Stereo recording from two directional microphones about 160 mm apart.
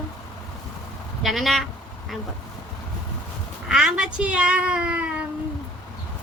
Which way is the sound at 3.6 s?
5° right (ahead or behind).